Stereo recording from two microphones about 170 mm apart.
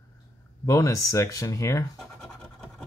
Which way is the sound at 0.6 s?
20° left (ahead or behind).